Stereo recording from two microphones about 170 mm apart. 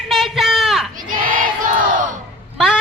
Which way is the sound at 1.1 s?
55° right (ahead or behind).